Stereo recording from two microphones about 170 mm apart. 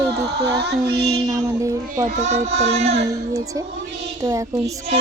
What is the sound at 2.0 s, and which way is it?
Speech, 40° right (ahead or behind).